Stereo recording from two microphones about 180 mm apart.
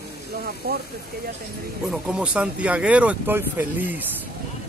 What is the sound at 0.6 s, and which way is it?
Speech, 55° right (ahead or behind).